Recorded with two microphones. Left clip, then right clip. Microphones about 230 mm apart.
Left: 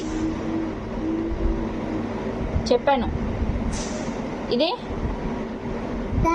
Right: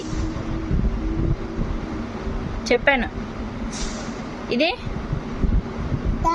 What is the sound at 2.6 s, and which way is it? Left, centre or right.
Speech, right.